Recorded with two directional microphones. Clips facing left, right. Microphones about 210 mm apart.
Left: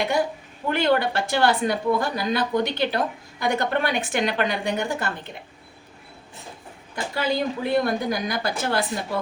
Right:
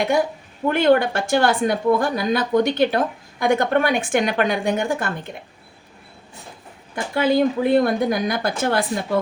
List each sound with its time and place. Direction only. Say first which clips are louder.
0.7 s a woman's voice: right 5 dB; 50° right (ahead or behind)
6.9 s a woman's voice: right 7 dB; 55° right (ahead or behind)